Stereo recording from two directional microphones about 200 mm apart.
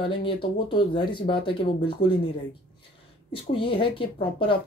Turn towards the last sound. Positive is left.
turn(degrees=25)  # may be behind; listen again after turning